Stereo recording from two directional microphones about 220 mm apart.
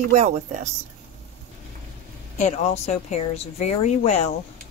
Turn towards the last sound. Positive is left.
turn(degrees=30)  # may be behind; listen again after turning